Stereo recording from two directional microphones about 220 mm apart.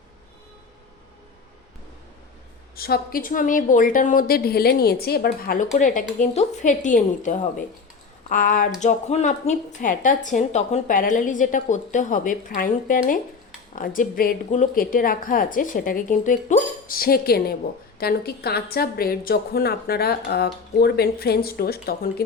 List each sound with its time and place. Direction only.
2.7 s a woman's voice: 45° left (ahead or behind)